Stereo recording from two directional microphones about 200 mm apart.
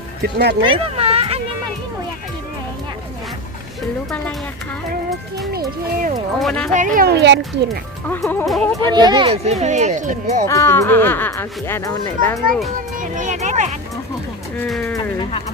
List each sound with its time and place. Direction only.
0.2 s speech: 55° right (ahead or behind)
0.6 s a sound: 25° right (ahead or behind)
5.5 s speech: 45° right (ahead or behind)
6.4 s speech: 5° left (ahead or behind)
6.7 s speech: 40° right (ahead or behind); by 7.3 s 55° right (ahead or behind)
8.0 s speech: 10° left (ahead or behind)
8.8 s speech: 20° right (ahead or behind); by 10.4 s 40° right (ahead or behind)
10.5 s speech: 15° left (ahead or behind)
13.0 s a sound: 40° right (ahead or behind)
14.6 s speech: 5° left (ahead or behind)
15.2 s speech: 30° left (ahead or behind)